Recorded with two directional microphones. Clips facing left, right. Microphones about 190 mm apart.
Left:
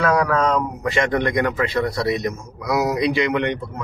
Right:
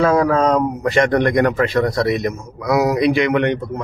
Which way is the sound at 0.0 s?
30° right (ahead or behind).